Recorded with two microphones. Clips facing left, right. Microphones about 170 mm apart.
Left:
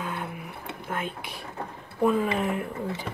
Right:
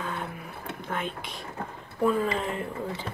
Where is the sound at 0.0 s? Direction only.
5° left (ahead or behind).